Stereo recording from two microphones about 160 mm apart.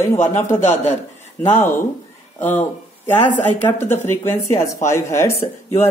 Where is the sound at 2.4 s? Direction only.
15° left (ahead or behind).